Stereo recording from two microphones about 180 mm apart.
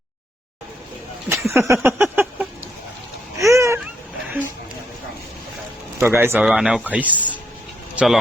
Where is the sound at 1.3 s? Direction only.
15° right (ahead or behind).